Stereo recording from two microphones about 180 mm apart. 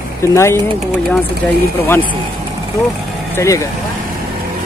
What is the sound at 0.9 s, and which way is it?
Speech, centre (ahead or behind).